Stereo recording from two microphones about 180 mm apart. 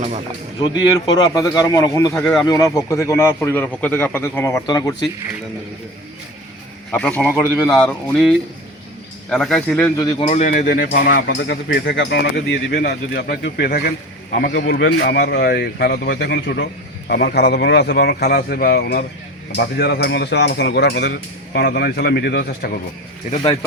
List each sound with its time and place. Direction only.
0.0 s speech: 40° right (ahead or behind)
0.6 s a man's voice: 25° left (ahead or behind)
2.1 s a man's voice: 5° left (ahead or behind)
2.5 s a man's voice: 20° left (ahead or behind)
6.9 s a man's voice: 5° left (ahead or behind)
7.3 s speech: 10° right (ahead or behind)
7.7 s a man's voice: 5° left (ahead or behind)
10.2 s speech: 40° left (ahead or behind); by 22.7 s 60° left (ahead or behind)